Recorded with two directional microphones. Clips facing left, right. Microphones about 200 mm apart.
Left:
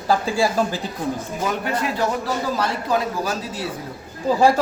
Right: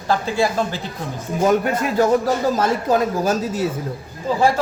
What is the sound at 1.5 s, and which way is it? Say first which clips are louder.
A man's voice: right 6 dB; 45° right (ahead or behind).